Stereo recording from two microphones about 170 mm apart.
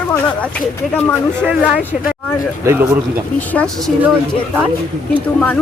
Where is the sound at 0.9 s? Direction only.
10° left (ahead or behind).